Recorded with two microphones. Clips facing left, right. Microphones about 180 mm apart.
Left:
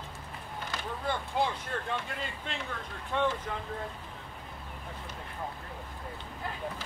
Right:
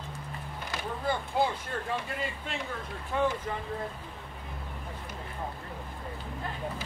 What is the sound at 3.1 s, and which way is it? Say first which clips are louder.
Speech: right 1 dB; 5° right (ahead or behind).